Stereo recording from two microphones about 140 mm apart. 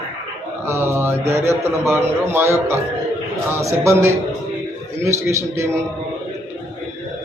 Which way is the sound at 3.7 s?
20° right (ahead or behind).